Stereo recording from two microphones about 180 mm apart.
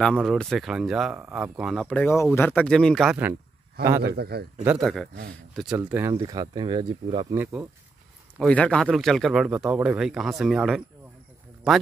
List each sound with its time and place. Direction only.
0.0 s speech: centre (ahead or behind)
4.0 s a man's voice: 60° right (ahead or behind)
4.6 s speech: centre (ahead or behind); by 7.3 s 30° right (ahead or behind)
8.4 s speech: 5° left (ahead or behind)